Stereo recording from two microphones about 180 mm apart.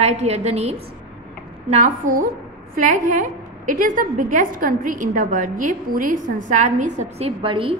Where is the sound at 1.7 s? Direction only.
45° right (ahead or behind).